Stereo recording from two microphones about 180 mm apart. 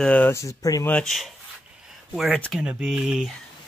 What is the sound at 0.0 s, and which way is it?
Speech, 10° left (ahead or behind).